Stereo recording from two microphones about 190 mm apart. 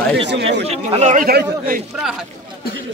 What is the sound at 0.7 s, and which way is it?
Speech, 35° right (ahead or behind).